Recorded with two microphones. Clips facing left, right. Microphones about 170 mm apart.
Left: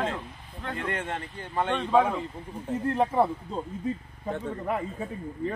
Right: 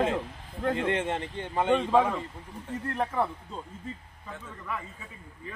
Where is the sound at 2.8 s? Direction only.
30° left (ahead or behind).